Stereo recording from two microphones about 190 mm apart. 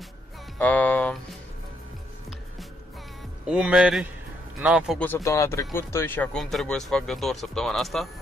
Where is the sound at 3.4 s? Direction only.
5° right (ahead or behind).